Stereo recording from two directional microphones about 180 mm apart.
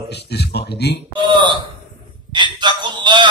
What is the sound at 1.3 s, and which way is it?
Speech, 25° right (ahead or behind).